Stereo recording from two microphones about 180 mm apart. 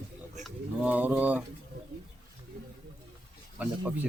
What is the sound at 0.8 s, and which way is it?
Mechanisms, 10° right (ahead or behind).